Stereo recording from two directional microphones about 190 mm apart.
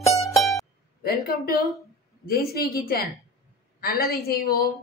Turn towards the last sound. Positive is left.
turn(degrees=50)  # may be behind; listen again after turning